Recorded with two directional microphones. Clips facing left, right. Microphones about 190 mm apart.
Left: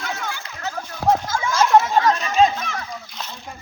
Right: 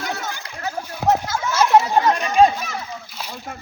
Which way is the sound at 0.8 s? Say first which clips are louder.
Even; 10° right (ahead or behind).